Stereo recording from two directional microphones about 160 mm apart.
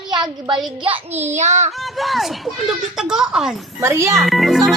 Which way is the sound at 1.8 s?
Centre (ahead or behind).